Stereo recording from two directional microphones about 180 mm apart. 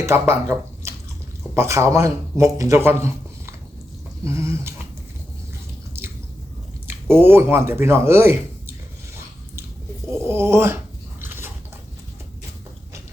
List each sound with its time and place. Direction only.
0.0 s a man's voice: 15° right (ahead or behind)
6.0 s squish: 15° right (ahead or behind)
6.8 s speech: 15° right (ahead or behind)
10.2 s a man's voice: 15° right (ahead or behind)
11.2 s biting: 10° right (ahead or behind)